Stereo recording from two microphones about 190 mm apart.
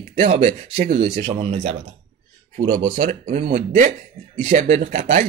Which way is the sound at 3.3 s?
40° right (ahead or behind).